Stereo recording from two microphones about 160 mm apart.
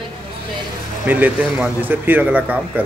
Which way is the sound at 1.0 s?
10° right (ahead or behind).